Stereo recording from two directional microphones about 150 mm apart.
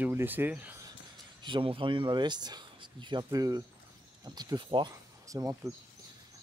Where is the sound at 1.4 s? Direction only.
35° right (ahead or behind).